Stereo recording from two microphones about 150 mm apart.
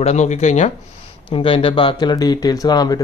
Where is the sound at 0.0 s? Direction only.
50° left (ahead or behind).